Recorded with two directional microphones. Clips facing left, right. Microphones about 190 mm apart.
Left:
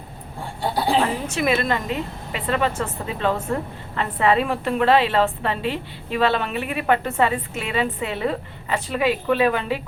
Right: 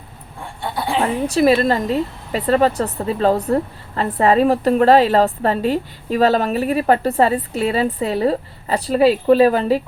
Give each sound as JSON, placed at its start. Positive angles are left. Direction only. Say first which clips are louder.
{"t": 1.3, "sound": "a woman's voice", "louder": "right 7 dB", "side_deg": -35}